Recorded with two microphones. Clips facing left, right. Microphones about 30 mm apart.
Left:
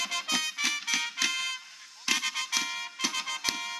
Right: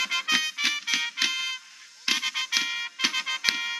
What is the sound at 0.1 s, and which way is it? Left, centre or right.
Music, centre.